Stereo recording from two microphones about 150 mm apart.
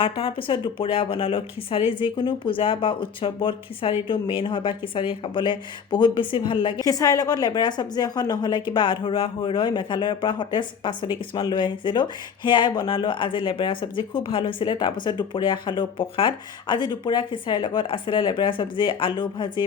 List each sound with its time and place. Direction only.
0.0 s speech: 35° left (ahead or behind)
6.8 s a woman's voice: 25° left (ahead or behind)